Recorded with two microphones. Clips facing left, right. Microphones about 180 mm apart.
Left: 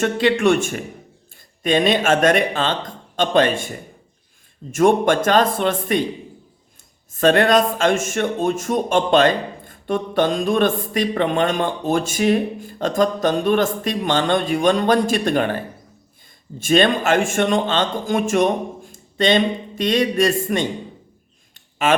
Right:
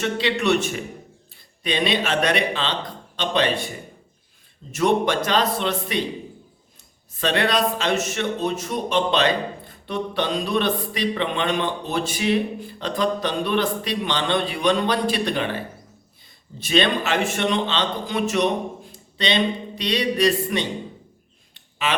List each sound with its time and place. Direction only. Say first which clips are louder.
0.0 s speech: left 6 dB; 50° left (ahead or behind)
4.7 s speech: left 5 dB; 50° left (ahead or behind)
7.1 s speech: left 7 dB; 50° left (ahead or behind)
21.5 s a sound: left 7 dB; 45° left (ahead or behind)